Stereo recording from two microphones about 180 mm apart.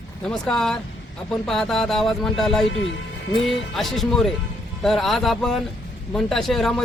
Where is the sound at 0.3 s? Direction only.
5° left (ahead or behind).